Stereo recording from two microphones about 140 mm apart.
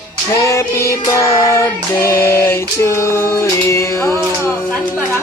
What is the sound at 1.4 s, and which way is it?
Female singing, 20° left (ahead or behind).